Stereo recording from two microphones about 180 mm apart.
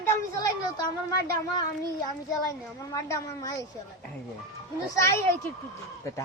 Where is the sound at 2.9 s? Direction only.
20° left (ahead or behind).